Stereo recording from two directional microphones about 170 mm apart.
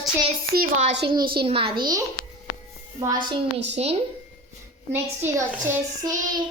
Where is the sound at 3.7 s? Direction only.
40° right (ahead or behind).